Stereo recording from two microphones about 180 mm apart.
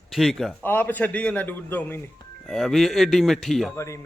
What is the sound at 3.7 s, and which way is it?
Speech, 15° left (ahead or behind).